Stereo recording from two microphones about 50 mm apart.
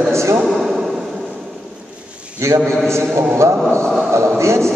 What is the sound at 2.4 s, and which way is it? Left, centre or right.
A man's voice, right.